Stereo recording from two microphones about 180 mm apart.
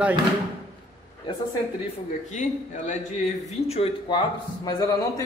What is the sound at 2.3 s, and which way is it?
A man's voice, 40° left (ahead or behind).